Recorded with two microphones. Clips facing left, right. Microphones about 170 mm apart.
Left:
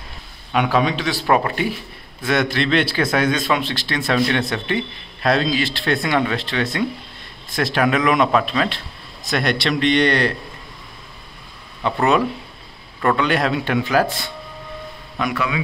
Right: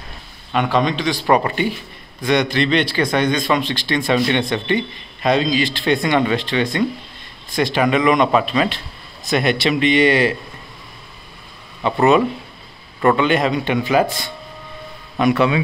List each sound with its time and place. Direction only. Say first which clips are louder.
0.5 s speech: even; 5° left (ahead or behind)
11.8 s speech: right 3 dB; centre (ahead or behind)
15.1 s speech: right 7 dB; 25° right (ahead or behind)